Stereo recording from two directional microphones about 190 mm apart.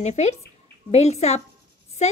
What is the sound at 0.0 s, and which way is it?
A woman's voice, 35° left (ahead or behind).